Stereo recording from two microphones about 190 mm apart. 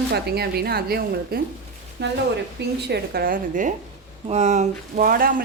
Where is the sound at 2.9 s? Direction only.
50° right (ahead or behind).